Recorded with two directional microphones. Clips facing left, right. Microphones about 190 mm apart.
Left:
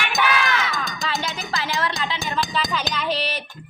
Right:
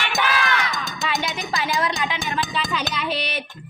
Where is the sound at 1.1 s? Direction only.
15° right (ahead or behind).